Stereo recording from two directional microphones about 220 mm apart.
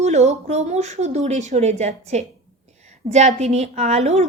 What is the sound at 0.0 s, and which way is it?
A woman's voice, 30° right (ahead or behind).